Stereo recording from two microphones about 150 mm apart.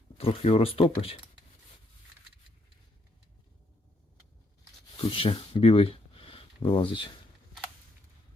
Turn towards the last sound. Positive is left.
turn(degrees=35)  # may be behind; listen again after turning